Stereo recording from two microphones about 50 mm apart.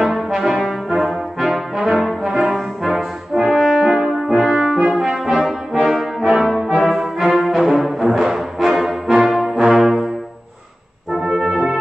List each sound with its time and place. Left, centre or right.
0.0 s brass instrument: centre
3.8 s french horn: centre
4.6 s brass instrument: centre
4.9 s brass instrument: centre
11.2 s brass instrument: centre